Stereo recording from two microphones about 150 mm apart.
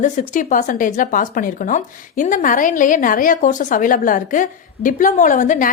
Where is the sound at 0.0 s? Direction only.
60° left (ahead or behind).